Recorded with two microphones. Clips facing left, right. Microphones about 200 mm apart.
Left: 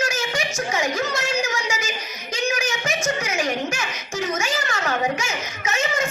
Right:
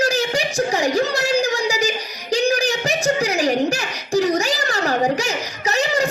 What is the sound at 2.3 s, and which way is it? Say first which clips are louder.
Giggle: right 7 dB; 35° right (ahead or behind).